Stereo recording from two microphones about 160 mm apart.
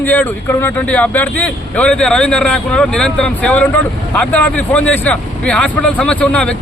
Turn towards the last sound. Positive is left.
turn(degrees=5)  # may be behind; listen again after turning